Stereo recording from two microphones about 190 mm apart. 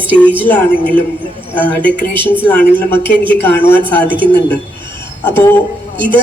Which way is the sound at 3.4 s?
10° left (ahead or behind).